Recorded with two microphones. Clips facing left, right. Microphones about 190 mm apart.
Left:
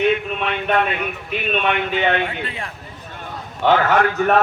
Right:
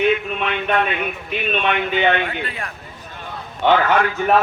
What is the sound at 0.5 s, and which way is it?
Speech, 40° left (ahead or behind).